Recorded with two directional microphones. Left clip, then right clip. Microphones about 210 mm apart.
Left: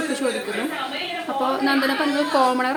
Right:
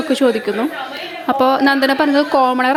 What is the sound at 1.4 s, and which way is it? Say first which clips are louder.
Speech: right 7 dB; 40° right (ahead or behind).